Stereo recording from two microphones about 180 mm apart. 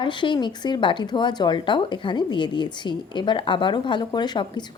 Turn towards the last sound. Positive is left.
turn(degrees=25)  # may be behind; listen again after turning